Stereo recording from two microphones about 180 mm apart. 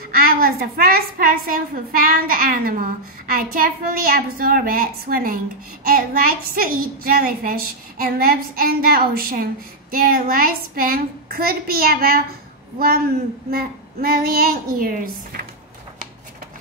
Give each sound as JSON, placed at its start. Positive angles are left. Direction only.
{"t": 0.1, "sound": "a woman's voice", "side_deg": -55}